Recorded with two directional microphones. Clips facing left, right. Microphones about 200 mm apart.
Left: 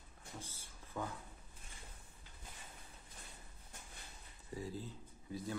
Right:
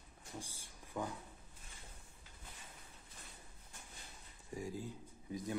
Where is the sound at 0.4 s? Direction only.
15° right (ahead or behind).